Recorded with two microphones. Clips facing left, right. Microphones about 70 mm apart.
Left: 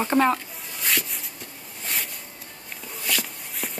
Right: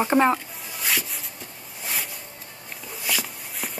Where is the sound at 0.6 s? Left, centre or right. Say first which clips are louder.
Even; centre.